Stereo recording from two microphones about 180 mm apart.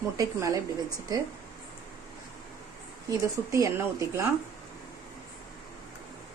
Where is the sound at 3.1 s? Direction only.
15° right (ahead or behind).